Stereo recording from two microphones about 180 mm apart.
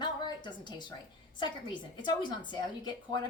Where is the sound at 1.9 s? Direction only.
25° left (ahead or behind).